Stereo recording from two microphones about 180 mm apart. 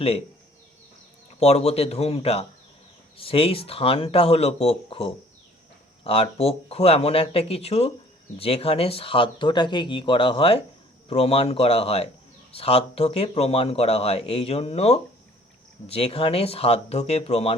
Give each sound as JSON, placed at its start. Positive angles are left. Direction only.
{"t": 1.4, "sound": "a man's voice", "side_deg": 35}